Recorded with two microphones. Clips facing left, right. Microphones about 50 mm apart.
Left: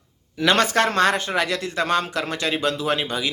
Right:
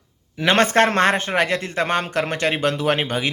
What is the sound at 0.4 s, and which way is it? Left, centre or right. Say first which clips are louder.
Speech: right 2 dB; right.